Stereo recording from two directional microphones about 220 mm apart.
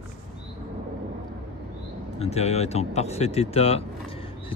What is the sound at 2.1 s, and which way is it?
Speech, 30° left (ahead or behind).